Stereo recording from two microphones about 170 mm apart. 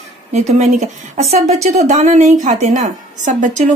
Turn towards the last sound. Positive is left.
turn(degrees=-45)  # may be behind; listen again after turning